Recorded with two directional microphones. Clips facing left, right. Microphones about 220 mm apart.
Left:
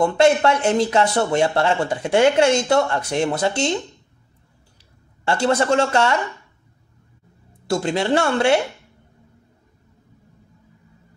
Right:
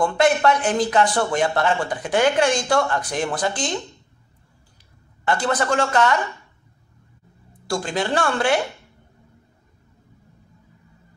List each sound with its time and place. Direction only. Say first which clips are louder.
0.0 s speech: left 2 dB; 25° left (ahead or behind)
4.7 s speech: even; 25° left (ahead or behind)
7.6 s speech: left 3 dB; 25° left (ahead or behind)